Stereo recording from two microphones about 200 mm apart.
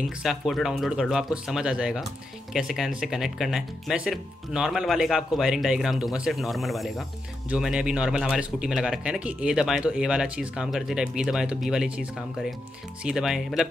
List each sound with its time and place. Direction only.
0.2 s speech: centre (ahead or behind)